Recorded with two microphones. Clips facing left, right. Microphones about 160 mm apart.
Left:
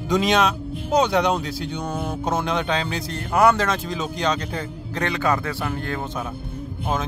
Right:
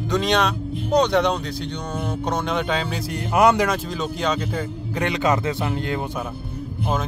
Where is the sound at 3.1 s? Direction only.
15° right (ahead or behind).